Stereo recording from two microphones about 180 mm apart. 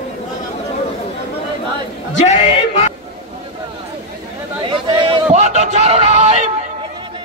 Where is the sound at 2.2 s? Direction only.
40° left (ahead or behind).